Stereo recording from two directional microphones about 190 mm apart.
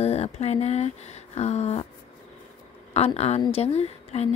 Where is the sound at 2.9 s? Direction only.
35° left (ahead or behind).